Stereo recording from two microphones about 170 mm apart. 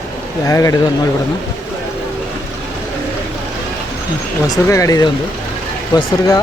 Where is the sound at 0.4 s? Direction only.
20° left (ahead or behind).